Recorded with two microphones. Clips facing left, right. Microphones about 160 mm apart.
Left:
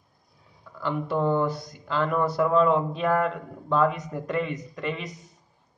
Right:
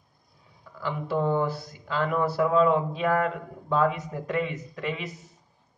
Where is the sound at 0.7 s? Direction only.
5° right (ahead or behind).